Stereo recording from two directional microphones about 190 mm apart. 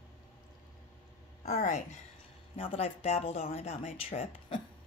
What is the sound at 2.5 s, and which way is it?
Speech, 30° left (ahead or behind).